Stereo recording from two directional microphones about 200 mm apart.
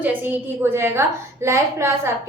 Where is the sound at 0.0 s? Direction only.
10° right (ahead or behind).